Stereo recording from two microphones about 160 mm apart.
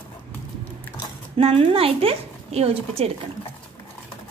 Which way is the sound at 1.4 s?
35° right (ahead or behind).